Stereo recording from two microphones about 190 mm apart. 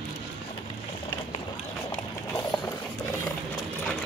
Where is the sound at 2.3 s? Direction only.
20° left (ahead or behind).